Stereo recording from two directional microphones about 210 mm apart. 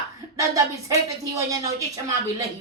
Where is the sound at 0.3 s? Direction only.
15° right (ahead or behind).